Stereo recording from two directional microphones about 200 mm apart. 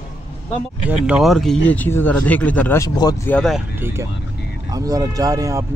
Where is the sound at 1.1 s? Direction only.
Centre (ahead or behind); by 3.3 s 20° left (ahead or behind).